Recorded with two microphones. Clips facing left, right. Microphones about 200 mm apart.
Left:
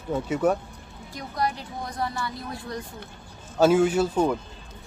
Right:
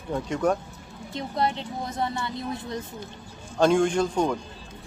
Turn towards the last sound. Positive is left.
turn(degrees=5)  # may be behind; listen again after turning